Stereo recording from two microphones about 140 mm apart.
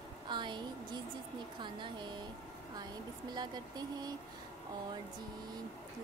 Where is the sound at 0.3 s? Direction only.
35° right (ahead or behind).